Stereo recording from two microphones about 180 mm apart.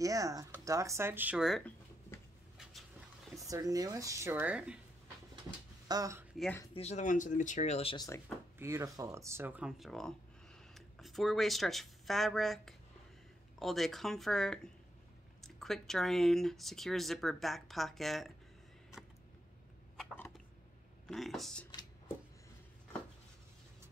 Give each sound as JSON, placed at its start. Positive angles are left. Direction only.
{"t": 0.0, "sound": "speech", "side_deg": -20}
{"t": 3.4, "sound": "speech", "side_deg": -20}
{"t": 5.9, "sound": "speech", "side_deg": -20}
{"t": 6.7, "sound": "speech", "side_deg": 35}
{"t": 8.5, "sound": "speech", "side_deg": -15}
{"t": 21.1, "sound": "speech", "side_deg": 0}